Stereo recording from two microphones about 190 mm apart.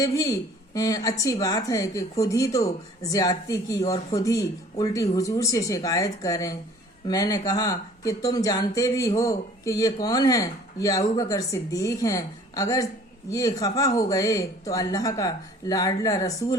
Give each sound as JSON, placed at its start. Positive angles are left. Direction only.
{"t": 0.0, "sound": "speech", "side_deg": 20}